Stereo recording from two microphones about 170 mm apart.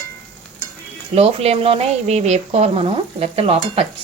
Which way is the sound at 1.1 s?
35° right (ahead or behind).